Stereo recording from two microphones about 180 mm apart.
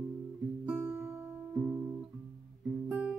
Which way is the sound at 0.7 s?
15° right (ahead or behind).